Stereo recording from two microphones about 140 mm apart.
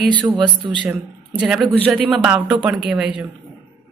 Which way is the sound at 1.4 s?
5° right (ahead or behind).